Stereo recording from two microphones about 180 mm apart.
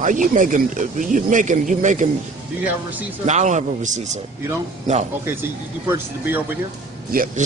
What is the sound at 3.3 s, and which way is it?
Speech, 40° right (ahead or behind).